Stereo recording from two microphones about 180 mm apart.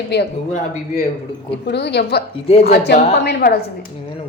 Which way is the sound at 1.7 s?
70° left (ahead or behind).